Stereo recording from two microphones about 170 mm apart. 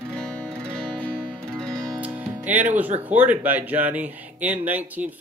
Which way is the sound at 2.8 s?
10° right (ahead or behind).